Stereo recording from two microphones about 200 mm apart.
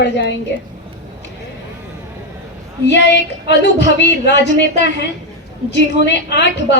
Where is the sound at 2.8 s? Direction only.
60° left (ahead or behind).